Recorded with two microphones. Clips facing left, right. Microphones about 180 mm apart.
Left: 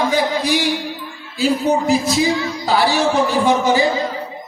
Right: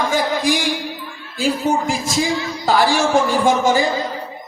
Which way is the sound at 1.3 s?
45° right (ahead or behind).